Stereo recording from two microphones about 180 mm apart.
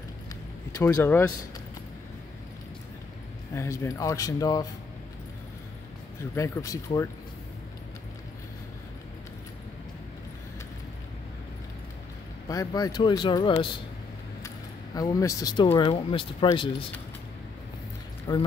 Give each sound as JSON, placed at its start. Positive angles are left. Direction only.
{"t": 0.7, "sound": "speech", "side_deg": 15}
{"t": 3.5, "sound": "speech", "side_deg": 15}
{"t": 6.3, "sound": "speech", "side_deg": 15}
{"t": 12.4, "sound": "speech", "side_deg": 20}
{"t": 15.0, "sound": "speech", "side_deg": 20}
{"t": 18.3, "sound": "speech", "side_deg": 20}